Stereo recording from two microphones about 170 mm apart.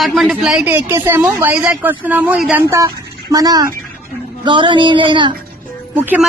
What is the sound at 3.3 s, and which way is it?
Speech, 20° right (ahead or behind).